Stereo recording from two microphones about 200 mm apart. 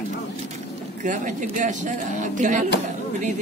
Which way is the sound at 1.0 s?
40° right (ahead or behind).